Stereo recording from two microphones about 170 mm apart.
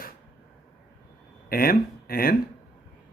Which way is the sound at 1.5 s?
60° left (ahead or behind).